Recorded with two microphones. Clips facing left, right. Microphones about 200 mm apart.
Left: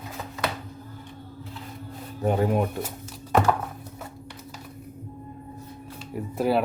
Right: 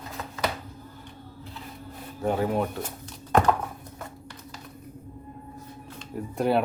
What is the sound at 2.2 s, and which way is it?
Speech, 20° left (ahead or behind).